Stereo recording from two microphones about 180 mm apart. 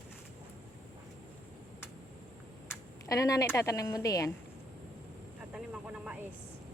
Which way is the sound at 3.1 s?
20° left (ahead or behind).